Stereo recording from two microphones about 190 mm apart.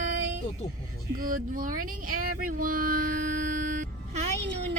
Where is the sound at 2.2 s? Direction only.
45° right (ahead or behind).